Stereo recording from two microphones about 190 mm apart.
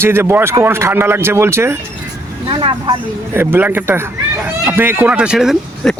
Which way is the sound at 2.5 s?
25° right (ahead or behind).